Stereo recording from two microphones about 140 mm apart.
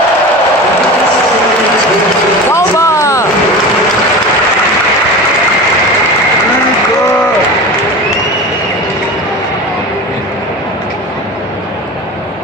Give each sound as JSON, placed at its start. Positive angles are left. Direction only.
{"t": 2.5, "sound": "vehicle", "side_deg": 20}